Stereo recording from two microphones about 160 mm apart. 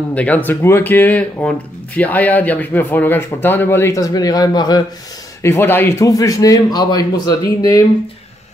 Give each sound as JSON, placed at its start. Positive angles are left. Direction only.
{"t": 0.1, "sound": "speech", "side_deg": 10}
{"t": 5.4, "sound": "a man's voice", "side_deg": 15}